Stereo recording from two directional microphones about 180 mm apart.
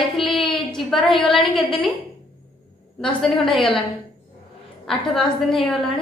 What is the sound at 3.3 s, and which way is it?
Speech, 30° left (ahead or behind).